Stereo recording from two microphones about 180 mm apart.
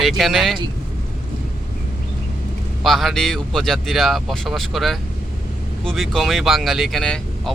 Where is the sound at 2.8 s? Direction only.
Centre (ahead or behind).